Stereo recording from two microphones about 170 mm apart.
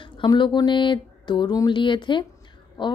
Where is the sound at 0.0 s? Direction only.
30° left (ahead or behind).